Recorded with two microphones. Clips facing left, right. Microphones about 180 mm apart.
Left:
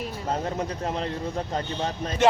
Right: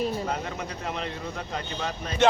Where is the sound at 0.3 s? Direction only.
35° left (ahead or behind).